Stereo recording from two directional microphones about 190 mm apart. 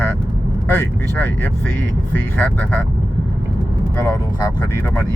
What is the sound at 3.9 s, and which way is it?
Speech, 15° left (ahead or behind).